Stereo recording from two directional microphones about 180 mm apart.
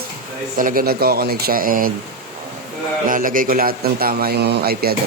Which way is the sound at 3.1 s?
50° right (ahead or behind).